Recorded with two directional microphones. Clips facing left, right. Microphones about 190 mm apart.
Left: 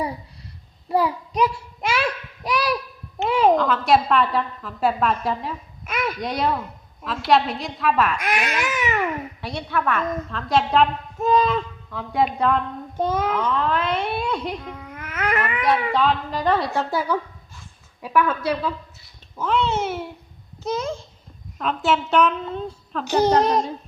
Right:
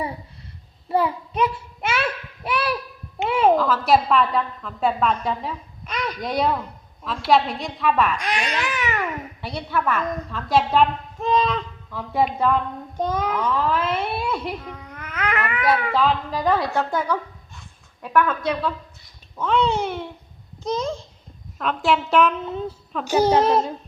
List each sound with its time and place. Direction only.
0.9 s child singing: 5° right (ahead or behind)
2.0 s a child's voice: 5° right (ahead or behind)
8.6 s babbling: 15° left (ahead or behind)
9.4 s a child's voice: centre (ahead or behind)
21.6 s a child's voice: centre (ahead or behind)